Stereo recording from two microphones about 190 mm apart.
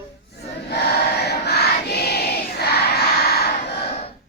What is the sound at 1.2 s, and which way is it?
Choir, 55° left (ahead or behind).